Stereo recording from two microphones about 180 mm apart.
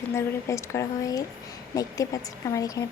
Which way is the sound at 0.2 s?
15° left (ahead or behind).